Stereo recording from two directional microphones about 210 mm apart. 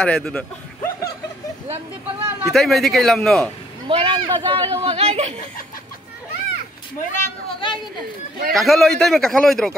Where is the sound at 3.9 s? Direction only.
25° right (ahead or behind).